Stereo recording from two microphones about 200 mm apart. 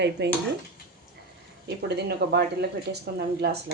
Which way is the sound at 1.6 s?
55° right (ahead or behind).